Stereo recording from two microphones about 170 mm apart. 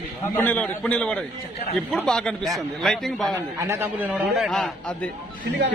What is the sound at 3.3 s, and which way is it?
Speech, 15° right (ahead or behind).